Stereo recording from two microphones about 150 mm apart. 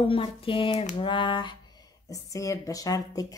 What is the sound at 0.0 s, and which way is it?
Speech, 35° left (ahead or behind).